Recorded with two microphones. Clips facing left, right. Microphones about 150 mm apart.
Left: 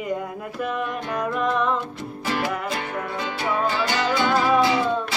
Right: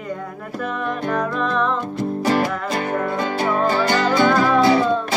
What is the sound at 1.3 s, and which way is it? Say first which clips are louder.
Music: right 1 dB; 10° left (ahead or behind).